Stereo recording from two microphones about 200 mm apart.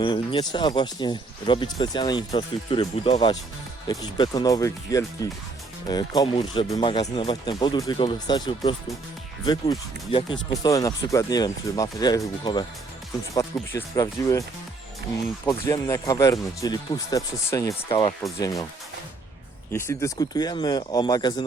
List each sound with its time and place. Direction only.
0.0 s speech: 25° left (ahead or behind)
13.3 s speech: 15° left (ahead or behind)
15.4 s speech: 15° left (ahead or behind)
19.7 s speech: 15° left (ahead or behind)